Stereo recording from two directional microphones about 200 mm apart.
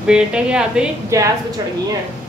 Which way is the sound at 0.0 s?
5° right (ahead or behind).